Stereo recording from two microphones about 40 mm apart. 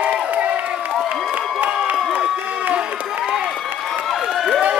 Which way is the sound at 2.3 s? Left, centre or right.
Right.